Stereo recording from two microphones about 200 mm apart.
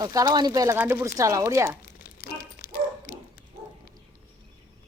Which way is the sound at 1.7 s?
45° left (ahead or behind).